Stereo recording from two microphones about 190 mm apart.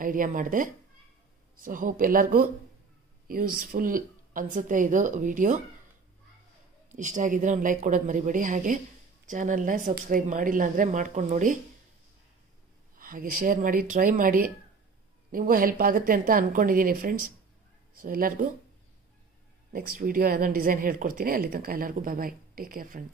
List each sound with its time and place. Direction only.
0.0 s a woman's voice: 45° right (ahead or behind)
6.9 s a woman's voice: 40° right (ahead or behind)
12.9 s a woman's voice: 45° right (ahead or behind)
19.7 s a woman's voice: 50° right (ahead or behind)